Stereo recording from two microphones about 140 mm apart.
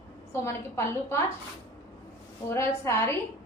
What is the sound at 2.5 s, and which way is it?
Speech, 20° left (ahead or behind).